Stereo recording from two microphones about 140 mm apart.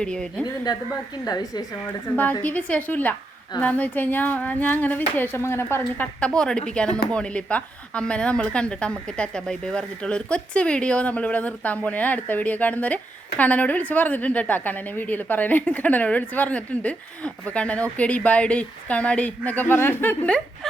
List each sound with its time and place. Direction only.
0.0 s a woman's voice: 5° left (ahead or behind)
0.4 s a woman's voice: 30° left (ahead or behind)
2.4 s a woman's voice: 10° left (ahead or behind)